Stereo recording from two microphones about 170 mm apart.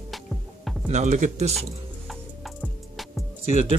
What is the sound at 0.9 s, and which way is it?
Speech, 45° right (ahead or behind).